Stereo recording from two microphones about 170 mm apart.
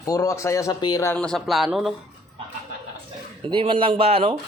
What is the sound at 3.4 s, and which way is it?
Speech, 30° right (ahead or behind).